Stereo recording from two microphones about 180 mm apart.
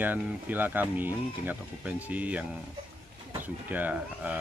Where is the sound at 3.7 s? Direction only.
10° right (ahead or behind).